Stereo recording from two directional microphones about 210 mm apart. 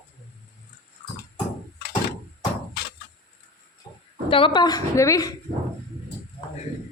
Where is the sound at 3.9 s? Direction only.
20° left (ahead or behind).